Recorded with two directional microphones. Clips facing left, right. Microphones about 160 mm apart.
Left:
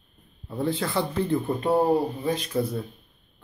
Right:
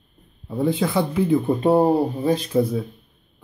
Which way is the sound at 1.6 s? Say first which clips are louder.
Right 3 dB; 30° right (ahead or behind).